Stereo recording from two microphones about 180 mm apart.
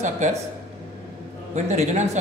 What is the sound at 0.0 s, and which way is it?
Speech, 40° right (ahead or behind).